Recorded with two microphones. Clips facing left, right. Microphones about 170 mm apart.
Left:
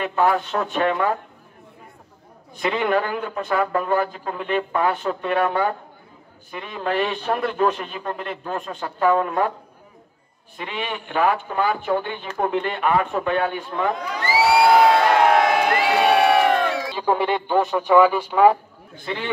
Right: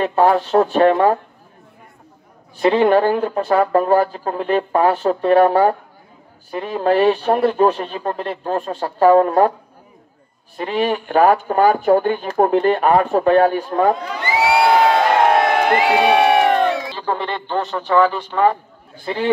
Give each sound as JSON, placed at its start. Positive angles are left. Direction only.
{"t": 0.0, "sound": "speech", "side_deg": -35}
{"t": 2.5, "sound": "speech", "side_deg": -35}
{"t": 10.6, "sound": "speech", "side_deg": -40}
{"t": 14.1, "sound": "crowd", "side_deg": 5}
{"t": 16.0, "sound": "crowd", "side_deg": 0}
{"t": 17.0, "sound": "speech", "side_deg": 10}
{"t": 19.0, "sound": "speech", "side_deg": -35}